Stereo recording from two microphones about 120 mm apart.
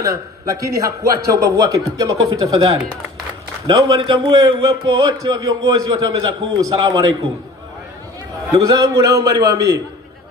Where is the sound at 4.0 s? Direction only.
35° right (ahead or behind).